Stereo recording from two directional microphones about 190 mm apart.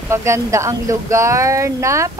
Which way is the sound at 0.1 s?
15° right (ahead or behind).